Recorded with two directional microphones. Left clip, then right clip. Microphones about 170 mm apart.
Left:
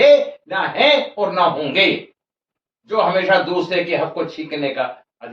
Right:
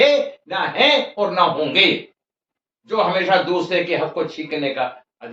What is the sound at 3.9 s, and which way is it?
Speech, 15° right (ahead or behind).